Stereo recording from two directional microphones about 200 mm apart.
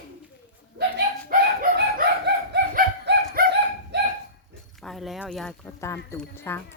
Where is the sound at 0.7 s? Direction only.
50° right (ahead or behind).